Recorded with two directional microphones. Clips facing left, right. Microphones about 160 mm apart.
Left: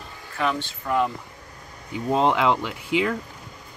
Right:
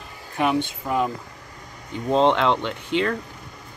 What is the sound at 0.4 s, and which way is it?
Speech, 15° right (ahead or behind).